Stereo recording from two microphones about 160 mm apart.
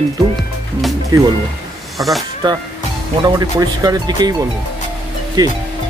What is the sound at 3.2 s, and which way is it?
Speech, 25° right (ahead or behind).